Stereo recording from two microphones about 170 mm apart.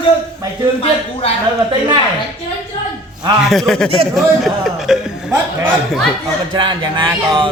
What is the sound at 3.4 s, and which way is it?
A man's voice, centre (ahead or behind).